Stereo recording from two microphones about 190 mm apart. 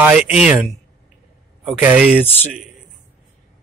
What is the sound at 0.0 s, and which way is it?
Speech, 5° right (ahead or behind).